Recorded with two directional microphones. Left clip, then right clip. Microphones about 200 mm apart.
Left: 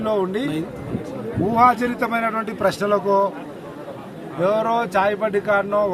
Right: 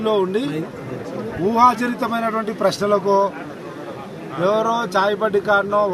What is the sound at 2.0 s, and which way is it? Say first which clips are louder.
Speech: even; 30° left (ahead or behind).